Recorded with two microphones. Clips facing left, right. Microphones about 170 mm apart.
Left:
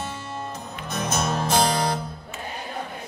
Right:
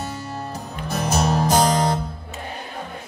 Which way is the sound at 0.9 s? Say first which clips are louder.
Right 4 dB; 35° right (ahead or behind).